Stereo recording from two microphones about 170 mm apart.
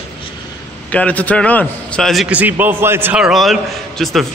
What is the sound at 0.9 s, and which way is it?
A man's voice, 10° left (ahead or behind).